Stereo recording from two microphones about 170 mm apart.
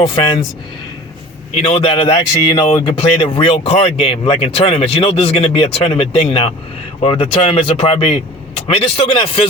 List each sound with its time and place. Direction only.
0.0 s speech: 30° left (ahead or behind)
1.6 s speech: 35° left (ahead or behind)